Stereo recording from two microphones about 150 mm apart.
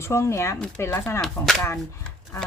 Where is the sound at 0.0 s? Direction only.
20° left (ahead or behind).